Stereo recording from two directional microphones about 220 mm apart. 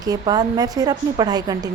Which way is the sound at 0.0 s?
15° right (ahead or behind).